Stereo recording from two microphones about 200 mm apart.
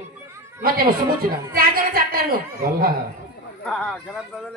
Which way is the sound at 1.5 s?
50° right (ahead or behind).